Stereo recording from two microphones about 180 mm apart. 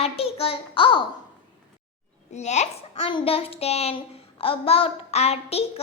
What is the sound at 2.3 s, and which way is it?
A child's voice, 40° left (ahead or behind).